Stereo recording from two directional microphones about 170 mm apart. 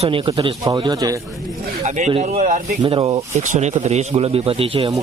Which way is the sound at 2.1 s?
35° right (ahead or behind).